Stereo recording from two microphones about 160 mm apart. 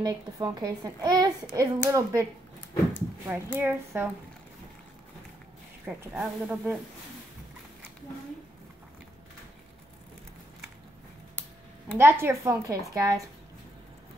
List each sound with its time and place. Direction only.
0.0 s a woman's voice: 25° right (ahead or behind)
5.9 s a woman's voice: 10° right (ahead or behind)
12.0 s a woman's voice: 15° right (ahead or behind)